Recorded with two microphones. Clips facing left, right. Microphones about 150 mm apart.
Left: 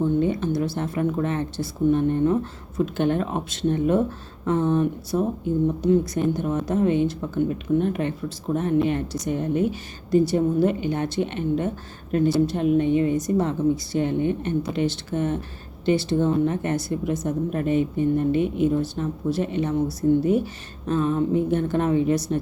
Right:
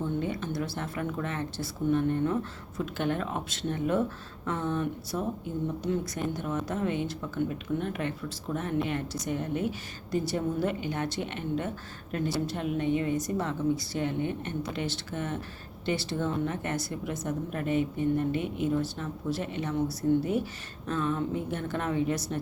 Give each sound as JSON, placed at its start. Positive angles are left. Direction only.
{"t": 0.2, "sound": "a woman's voice", "side_deg": 25}
{"t": 5.1, "sound": "speech", "side_deg": 35}
{"t": 6.4, "sound": "a woman's voice", "side_deg": 25}